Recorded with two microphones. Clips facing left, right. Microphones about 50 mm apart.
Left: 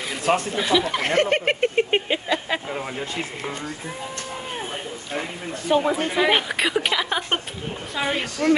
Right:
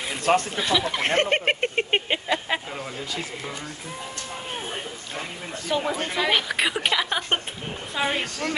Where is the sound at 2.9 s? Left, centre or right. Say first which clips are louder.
Left 3 dB; left.